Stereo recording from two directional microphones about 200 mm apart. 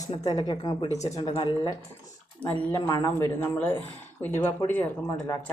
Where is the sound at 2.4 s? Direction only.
10° left (ahead or behind).